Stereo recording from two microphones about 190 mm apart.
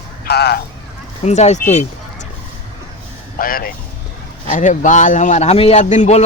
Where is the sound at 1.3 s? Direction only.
35° left (ahead or behind).